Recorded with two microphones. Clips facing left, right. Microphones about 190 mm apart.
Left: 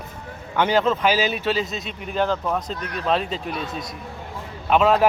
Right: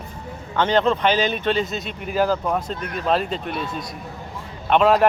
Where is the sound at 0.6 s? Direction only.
10° left (ahead or behind).